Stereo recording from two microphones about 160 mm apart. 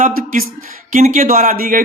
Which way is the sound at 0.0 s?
60° right (ahead or behind).